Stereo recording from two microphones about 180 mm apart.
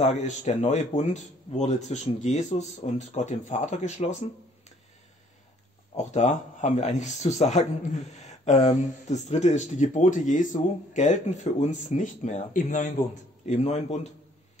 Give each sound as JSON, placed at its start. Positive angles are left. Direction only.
{"t": 0.0, "sound": "speech", "side_deg": 40}
{"t": 5.9, "sound": "speech", "side_deg": 40}